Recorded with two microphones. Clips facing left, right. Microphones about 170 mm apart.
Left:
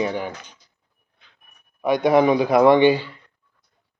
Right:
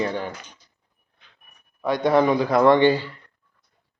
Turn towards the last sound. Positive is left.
turn(degrees=15)  # may be behind; listen again after turning